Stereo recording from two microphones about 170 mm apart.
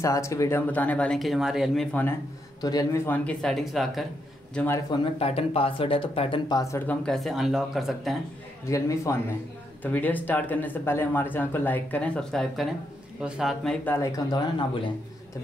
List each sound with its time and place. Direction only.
0.0 s speech: 20° left (ahead or behind)
2.6 s speech: 20° left (ahead or behind)
3.3 s speech: centre (ahead or behind)
4.6 s speech: 15° left (ahead or behind)
4.9 s speech: 35° left (ahead or behind)
6.6 s speech: 15° left (ahead or behind)
7.1 s speech: centre (ahead or behind)
8.6 s speech: 20° left (ahead or behind); by 13.7 s centre (ahead or behind)
13.8 s speech: 15° left (ahead or behind)